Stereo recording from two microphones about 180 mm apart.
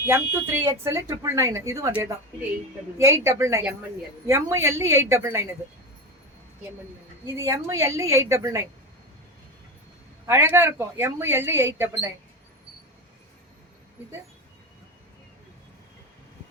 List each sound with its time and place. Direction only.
0.0 s speech: 15° right (ahead or behind)
7.3 s speech: 15° right (ahead or behind)
10.2 s speech: 15° right (ahead or behind)